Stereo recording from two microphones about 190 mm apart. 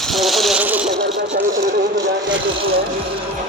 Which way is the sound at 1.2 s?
70° right (ahead or behind).